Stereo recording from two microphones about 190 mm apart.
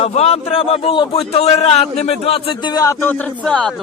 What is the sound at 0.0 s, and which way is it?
A man's voice, 35° left (ahead or behind).